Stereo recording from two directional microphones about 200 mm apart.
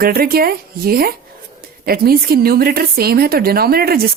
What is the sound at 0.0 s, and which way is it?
A woman's voice, 45° right (ahead or behind).